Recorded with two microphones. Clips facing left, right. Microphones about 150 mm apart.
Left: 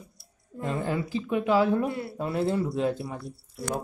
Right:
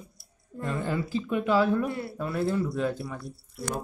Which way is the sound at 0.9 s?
15° left (ahead or behind).